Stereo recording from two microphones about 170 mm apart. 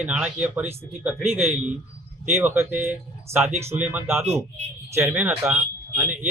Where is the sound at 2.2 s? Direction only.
10° right (ahead or behind).